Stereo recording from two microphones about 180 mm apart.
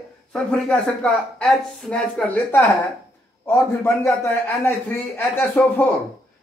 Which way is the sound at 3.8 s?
15° left (ahead or behind).